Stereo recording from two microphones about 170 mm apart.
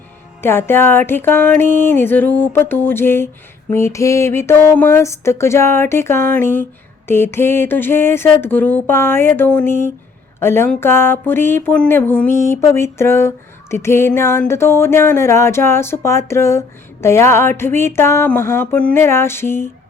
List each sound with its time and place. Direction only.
0.4 s speech: 15° left (ahead or behind)